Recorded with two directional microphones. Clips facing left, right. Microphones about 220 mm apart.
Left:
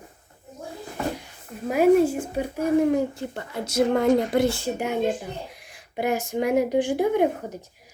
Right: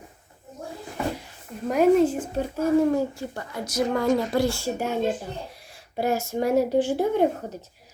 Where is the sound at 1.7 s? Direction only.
10° left (ahead or behind); by 4.1 s 25° left (ahead or behind).